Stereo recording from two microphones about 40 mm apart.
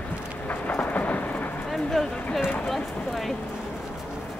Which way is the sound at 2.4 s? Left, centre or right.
Left.